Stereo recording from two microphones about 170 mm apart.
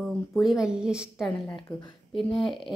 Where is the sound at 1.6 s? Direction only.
30° left (ahead or behind).